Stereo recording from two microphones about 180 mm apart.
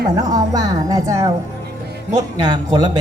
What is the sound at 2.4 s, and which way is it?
Speech, 20° right (ahead or behind).